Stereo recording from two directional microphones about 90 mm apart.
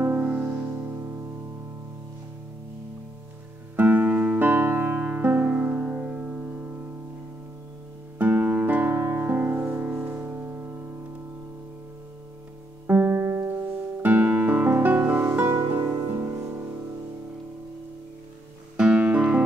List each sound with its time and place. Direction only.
0.0 s music: 25° right (ahead or behind)
3.7 s music: 20° right (ahead or behind)
8.2 s music: 20° right (ahead or behind)
12.8 s music: 20° right (ahead or behind)
14.0 s music: 20° right (ahead or behind)
18.8 s music: 10° right (ahead or behind)